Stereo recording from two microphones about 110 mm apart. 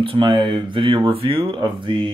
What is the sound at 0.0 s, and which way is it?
Speech, 55° right (ahead or behind).